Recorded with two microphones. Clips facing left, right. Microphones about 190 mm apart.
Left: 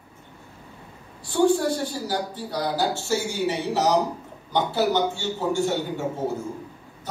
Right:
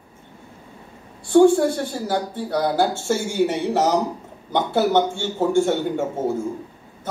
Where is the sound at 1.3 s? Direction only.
55° right (ahead or behind).